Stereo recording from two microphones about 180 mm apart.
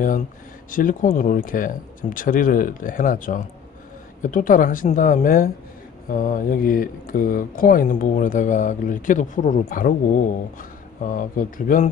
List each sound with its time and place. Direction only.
0.7 s speech: 50° left (ahead or behind)